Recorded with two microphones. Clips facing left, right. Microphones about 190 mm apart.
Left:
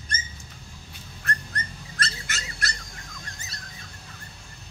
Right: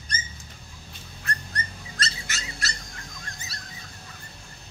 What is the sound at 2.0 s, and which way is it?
Bird, 55° left (ahead or behind).